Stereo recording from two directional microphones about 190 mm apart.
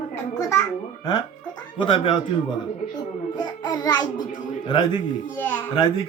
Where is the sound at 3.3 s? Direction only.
20° left (ahead or behind).